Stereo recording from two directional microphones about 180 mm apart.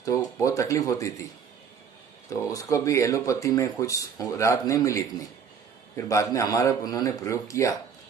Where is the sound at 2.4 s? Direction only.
15° left (ahead or behind).